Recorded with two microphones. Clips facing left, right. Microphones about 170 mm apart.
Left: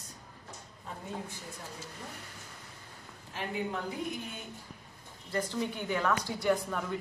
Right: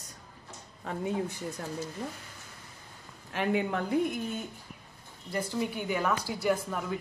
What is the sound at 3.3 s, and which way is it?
Speech, 65° right (ahead or behind).